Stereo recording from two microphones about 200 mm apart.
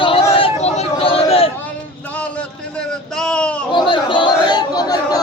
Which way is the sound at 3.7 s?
25° left (ahead or behind).